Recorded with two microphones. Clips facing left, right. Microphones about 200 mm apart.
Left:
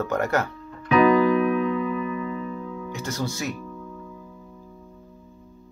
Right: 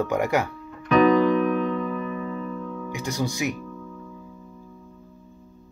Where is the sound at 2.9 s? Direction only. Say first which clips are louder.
Right 2 dB; 15° right (ahead or behind).